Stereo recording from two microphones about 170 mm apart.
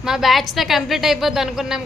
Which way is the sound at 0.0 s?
Centre (ahead or behind).